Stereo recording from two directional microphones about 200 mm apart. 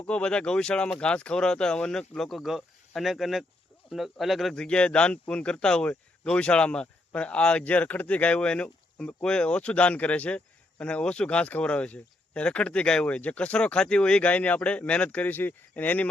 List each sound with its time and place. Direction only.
0.0 s speech: 5° left (ahead or behind)